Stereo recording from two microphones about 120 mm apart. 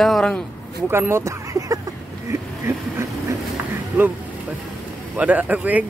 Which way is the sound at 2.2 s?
25° right (ahead or behind).